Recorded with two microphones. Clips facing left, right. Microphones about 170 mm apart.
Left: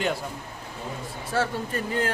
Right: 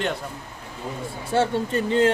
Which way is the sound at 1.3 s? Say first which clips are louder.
Right 5 dB; 25° right (ahead or behind).